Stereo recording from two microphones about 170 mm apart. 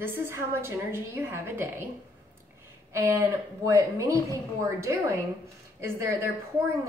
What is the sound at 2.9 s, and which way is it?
A woman's voice, 15° right (ahead or behind).